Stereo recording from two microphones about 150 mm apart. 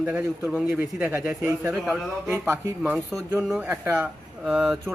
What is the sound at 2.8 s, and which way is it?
Speech, 5° right (ahead or behind).